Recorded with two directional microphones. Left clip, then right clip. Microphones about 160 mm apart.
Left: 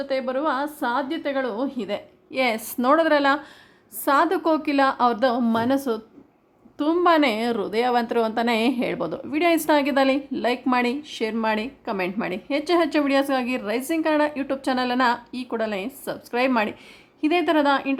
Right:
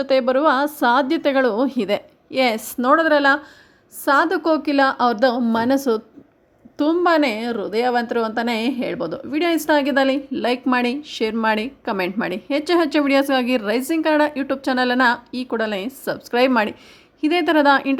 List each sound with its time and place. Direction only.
0.0 s a woman's voice: 35° right (ahead or behind)